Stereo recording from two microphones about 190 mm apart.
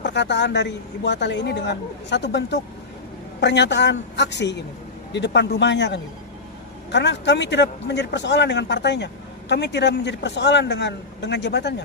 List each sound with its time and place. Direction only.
0.0 s a man's voice: 65° left (ahead or behind)